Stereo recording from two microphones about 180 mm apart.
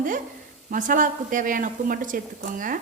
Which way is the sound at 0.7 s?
50° right (ahead or behind).